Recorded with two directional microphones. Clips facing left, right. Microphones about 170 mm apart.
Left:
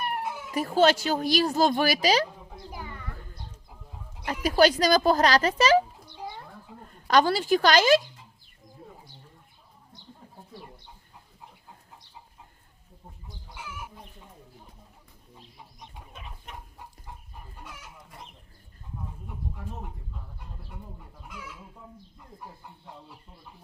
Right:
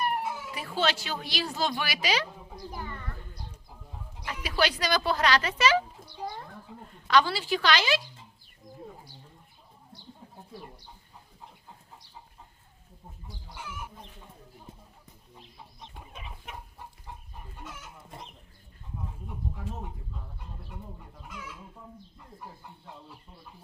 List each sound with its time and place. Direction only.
0.5 s speech: 45° left (ahead or behind)
2.7 s speech: 10° left (ahead or behind)
4.3 s speech: 40° left (ahead or behind)
6.8 s speech: 45° left (ahead or behind)
13.6 s chicken: 10° left (ahead or behind)
16.1 s chicken: centre (ahead or behind)
19.6 s speech: centre (ahead or behind)
21.2 s chicken: 5° left (ahead or behind)